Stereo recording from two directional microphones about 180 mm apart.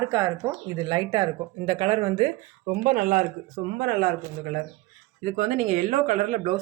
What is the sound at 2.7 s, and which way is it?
Speech, 50° right (ahead or behind).